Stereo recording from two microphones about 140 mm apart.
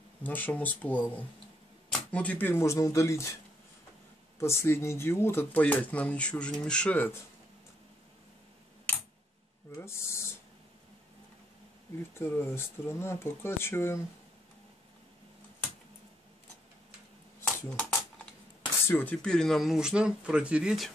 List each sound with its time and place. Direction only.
0.2 s speech: 10° left (ahead or behind)
4.4 s speech: 20° left (ahead or behind)
9.8 s speech: 20° left (ahead or behind)
12.1 s speech: 15° left (ahead or behind)
17.6 s a sound: 10° left (ahead or behind)
18.9 s speech: 15° left (ahead or behind); by 20.9 s 5° right (ahead or behind)